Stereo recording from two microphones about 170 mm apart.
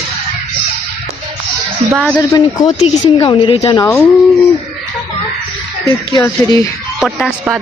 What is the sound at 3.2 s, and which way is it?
Speech, 35° left (ahead or behind).